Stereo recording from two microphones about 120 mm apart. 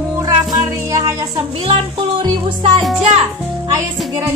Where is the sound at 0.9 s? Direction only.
25° right (ahead or behind).